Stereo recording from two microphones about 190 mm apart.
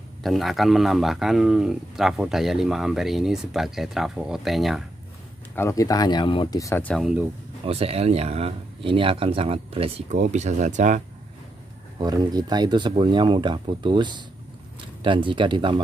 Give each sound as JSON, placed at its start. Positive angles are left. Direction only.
{"t": 0.2, "sound": "speech", "side_deg": 0}
{"t": 5.6, "sound": "speech", "side_deg": 15}
{"t": 7.0, "sound": "speech", "side_deg": -5}
{"t": 7.6, "sound": "speech", "side_deg": -30}
{"t": 12.0, "sound": "speech", "side_deg": -20}